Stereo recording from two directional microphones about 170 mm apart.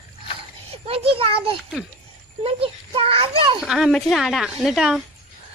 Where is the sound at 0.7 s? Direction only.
35° right (ahead or behind).